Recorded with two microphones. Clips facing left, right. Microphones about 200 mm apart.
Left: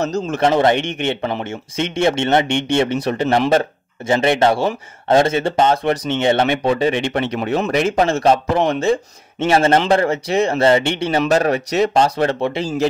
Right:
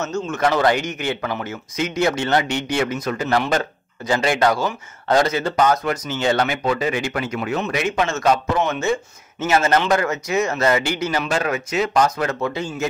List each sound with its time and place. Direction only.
0.0 s speech: 35° left (ahead or behind)